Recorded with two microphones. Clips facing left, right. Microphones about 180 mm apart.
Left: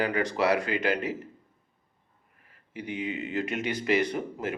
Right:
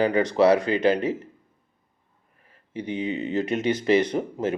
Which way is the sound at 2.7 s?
25° right (ahead or behind).